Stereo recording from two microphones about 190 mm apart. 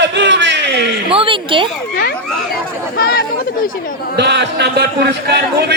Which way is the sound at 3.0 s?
55° left (ahead or behind).